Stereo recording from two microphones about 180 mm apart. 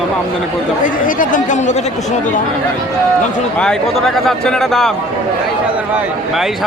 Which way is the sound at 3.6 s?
5° left (ahead or behind).